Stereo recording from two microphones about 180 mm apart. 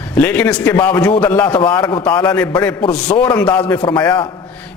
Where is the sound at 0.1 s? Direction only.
10° left (ahead or behind).